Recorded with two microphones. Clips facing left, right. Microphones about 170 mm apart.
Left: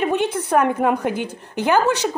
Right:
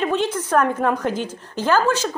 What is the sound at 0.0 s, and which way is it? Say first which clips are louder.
A woman's voice: left 1 dB; 15° left (ahead or behind).